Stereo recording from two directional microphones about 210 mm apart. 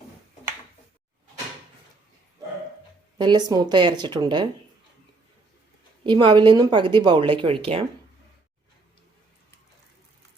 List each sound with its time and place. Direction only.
3.2 s speech: 20° right (ahead or behind)
6.1 s speech: 20° right (ahead or behind)